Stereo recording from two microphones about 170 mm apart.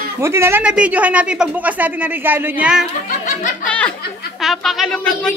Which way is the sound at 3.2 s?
50° left (ahead or behind).